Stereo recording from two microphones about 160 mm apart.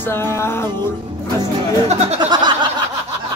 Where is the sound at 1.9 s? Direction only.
40° right (ahead or behind).